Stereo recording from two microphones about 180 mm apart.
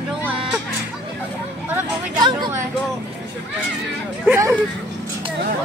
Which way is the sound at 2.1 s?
25° right (ahead or behind).